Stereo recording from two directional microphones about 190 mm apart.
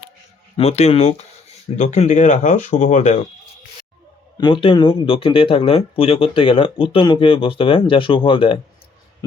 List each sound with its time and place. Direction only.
0.5 s speech: 35° left (ahead or behind)
4.4 s speech: 25° left (ahead or behind)